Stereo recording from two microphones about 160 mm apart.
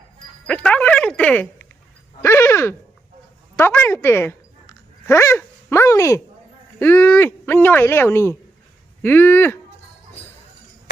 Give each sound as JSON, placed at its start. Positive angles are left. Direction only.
{"t": 0.4, "sound": "music", "side_deg": 5}
{"t": 2.2, "sound": "a sound", "side_deg": 15}
{"t": 5.8, "sound": "a woman's voice", "side_deg": 20}